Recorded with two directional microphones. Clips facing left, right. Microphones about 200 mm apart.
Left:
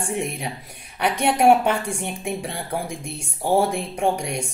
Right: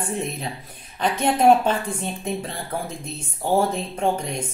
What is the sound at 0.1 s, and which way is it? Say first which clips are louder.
Speech: left 1 dB; 10° left (ahead or behind).